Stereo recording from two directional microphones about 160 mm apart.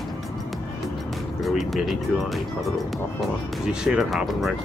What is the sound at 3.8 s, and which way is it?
Speech, centre (ahead or behind).